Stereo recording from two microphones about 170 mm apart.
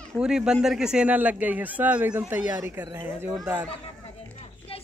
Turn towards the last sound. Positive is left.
turn(degrees=35)  # may be behind; listen again after turning